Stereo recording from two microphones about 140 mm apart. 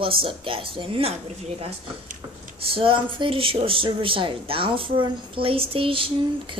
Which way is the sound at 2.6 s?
40° right (ahead or behind).